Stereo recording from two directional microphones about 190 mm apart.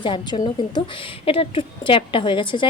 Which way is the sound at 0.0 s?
25° left (ahead or behind).